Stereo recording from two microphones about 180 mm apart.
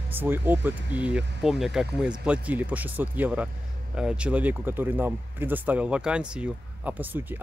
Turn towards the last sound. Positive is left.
turn(degrees=-10)  # may be behind; listen again after turning